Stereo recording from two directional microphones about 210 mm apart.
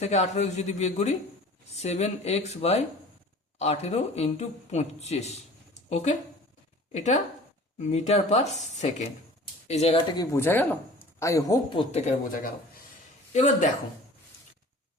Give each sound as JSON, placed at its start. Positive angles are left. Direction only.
{"t": 0.0, "sound": "speech", "side_deg": 30}
{"t": 10.2, "sound": "speech", "side_deg": 10}